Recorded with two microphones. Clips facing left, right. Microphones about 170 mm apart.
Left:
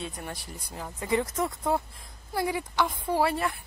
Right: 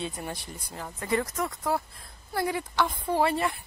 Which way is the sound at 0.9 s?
15° left (ahead or behind).